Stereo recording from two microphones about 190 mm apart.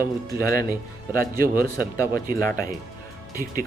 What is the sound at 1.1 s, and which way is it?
Speech, 50° right (ahead or behind).